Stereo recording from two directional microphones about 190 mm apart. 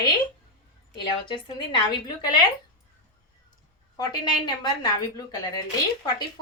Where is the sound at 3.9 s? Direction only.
20° left (ahead or behind).